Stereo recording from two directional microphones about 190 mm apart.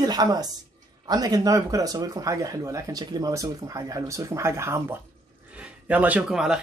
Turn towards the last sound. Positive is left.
turn(degrees=-5)  # may be behind; listen again after turning